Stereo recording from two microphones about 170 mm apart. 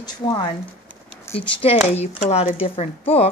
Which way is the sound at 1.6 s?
35° left (ahead or behind).